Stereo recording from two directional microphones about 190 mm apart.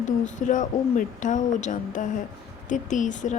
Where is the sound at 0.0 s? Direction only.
40° left (ahead or behind).